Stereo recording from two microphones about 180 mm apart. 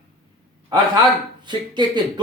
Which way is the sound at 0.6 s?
20° right (ahead or behind).